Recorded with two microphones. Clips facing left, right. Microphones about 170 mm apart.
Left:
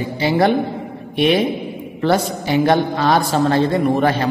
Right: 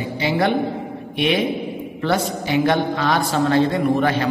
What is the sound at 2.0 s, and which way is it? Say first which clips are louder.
A man's voice: left 4 dB; 35° left (ahead or behind).